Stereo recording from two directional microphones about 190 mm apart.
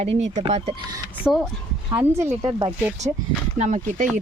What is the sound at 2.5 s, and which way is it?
Speech, 25° right (ahead or behind).